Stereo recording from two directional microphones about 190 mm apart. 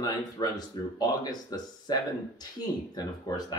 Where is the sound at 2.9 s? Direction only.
20° left (ahead or behind).